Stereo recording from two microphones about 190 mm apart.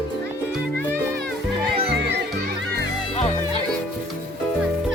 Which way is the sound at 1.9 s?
65° right (ahead or behind).